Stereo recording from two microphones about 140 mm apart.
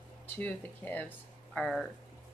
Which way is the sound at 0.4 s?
10° left (ahead or behind).